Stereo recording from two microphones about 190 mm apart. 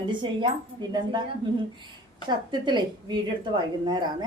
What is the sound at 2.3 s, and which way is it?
Speech, 25° right (ahead or behind).